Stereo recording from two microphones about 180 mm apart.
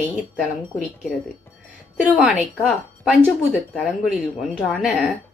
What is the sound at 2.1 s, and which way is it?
Speech, 5° right (ahead or behind).